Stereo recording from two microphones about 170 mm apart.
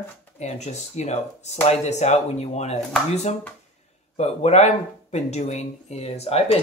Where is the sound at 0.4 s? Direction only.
40° left (ahead or behind).